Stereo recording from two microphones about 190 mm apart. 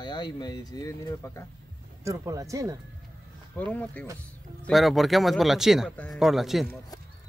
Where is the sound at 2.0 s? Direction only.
15° right (ahead or behind).